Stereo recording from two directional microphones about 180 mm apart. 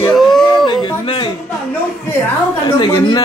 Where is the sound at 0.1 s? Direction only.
Centre (ahead or behind).